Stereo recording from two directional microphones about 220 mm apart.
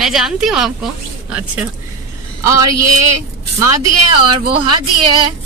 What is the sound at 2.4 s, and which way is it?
Speech, 15° right (ahead or behind).